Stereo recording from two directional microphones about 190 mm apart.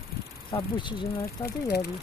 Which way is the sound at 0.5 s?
15° left (ahead or behind).